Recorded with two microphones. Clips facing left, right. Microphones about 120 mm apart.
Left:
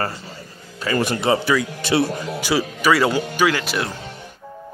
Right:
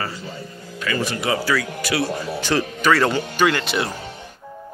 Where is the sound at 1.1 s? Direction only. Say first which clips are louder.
Left 3 dB; 30° left (ahead or behind).